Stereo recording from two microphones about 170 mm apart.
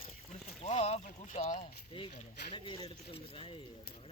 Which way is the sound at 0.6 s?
40° left (ahead or behind).